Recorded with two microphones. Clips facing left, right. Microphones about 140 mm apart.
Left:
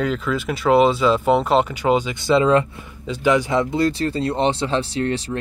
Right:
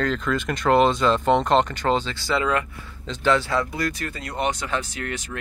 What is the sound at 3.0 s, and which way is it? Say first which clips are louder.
Speech: left 3 dB; 10° left (ahead or behind).